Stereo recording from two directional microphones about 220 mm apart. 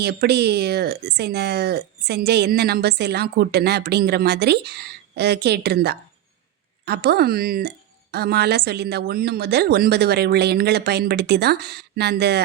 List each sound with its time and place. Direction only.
0.0 s speech: 50° right (ahead or behind)